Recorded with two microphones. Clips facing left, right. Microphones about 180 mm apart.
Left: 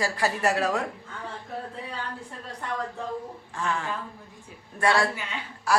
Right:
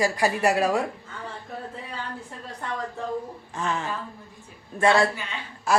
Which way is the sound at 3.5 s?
20° right (ahead or behind).